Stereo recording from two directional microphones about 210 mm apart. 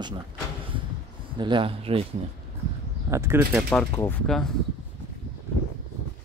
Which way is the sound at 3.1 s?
10° right (ahead or behind).